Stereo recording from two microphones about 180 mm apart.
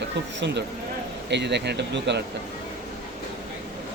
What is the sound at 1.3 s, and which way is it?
Speech, 70° right (ahead or behind).